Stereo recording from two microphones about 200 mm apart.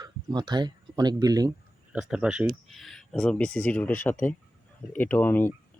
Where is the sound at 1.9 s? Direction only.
5° right (ahead or behind).